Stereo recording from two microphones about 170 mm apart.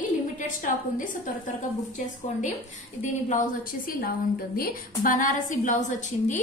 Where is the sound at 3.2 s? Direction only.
55° left (ahead or behind).